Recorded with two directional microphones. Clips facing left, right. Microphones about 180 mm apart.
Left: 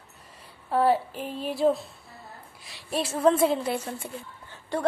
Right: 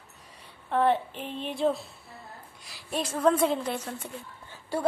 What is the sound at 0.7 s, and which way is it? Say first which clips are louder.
A woman's voice: left 2 dB; 5° left (ahead or behind).